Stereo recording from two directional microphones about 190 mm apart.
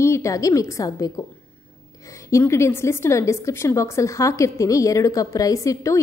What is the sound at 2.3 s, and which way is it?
A woman's voice, 15° left (ahead or behind).